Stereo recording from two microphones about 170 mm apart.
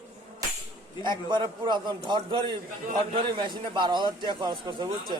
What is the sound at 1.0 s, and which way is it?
A man's voice, 25° right (ahead or behind).